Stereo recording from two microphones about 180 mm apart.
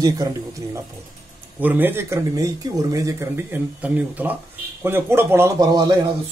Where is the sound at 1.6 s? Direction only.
10° right (ahead or behind).